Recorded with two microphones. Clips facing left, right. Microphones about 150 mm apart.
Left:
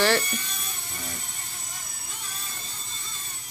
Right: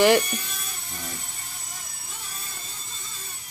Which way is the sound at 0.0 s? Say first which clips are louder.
Right 5 dB; 15° right (ahead or behind).